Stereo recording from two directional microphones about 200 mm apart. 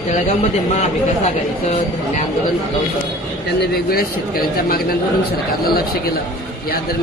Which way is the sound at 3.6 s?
50° left (ahead or behind).